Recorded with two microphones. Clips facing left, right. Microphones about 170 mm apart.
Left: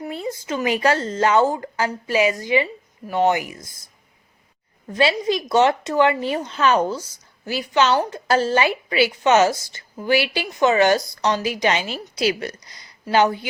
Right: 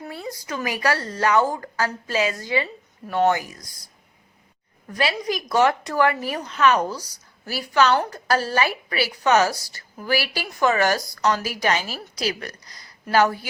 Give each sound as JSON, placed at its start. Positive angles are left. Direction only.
{"t": 0.0, "sound": "a woman's voice", "side_deg": 20}
{"t": 4.9, "sound": "a woman's voice", "side_deg": 25}